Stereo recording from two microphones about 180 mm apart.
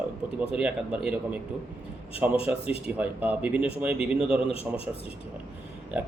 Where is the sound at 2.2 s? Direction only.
5° right (ahead or behind).